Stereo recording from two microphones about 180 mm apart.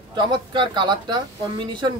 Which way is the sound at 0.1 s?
25° right (ahead or behind).